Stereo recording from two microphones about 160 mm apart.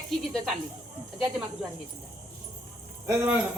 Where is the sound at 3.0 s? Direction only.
20° right (ahead or behind).